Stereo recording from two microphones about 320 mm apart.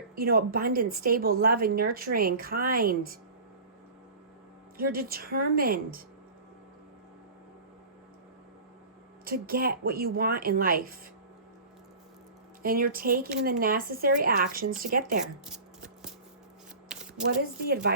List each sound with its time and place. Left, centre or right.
0.2 s speech: right
4.8 s speech: right
9.2 s speech: right
12.6 s speech: right
17.2 s speech: right